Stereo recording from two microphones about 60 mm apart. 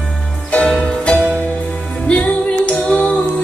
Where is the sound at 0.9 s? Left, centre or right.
Centre.